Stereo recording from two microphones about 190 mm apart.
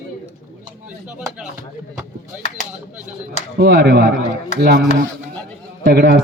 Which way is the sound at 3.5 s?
60° right (ahead or behind).